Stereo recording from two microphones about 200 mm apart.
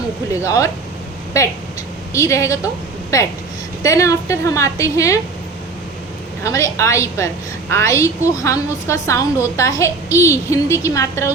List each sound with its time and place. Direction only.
0.4 s a woman's voice: 15° left (ahead or behind)
3.8 s a woman's voice: 15° left (ahead or behind)
6.4 s a woman's voice: 15° left (ahead or behind)